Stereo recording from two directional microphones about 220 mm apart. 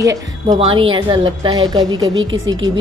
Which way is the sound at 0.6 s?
25° right (ahead or behind).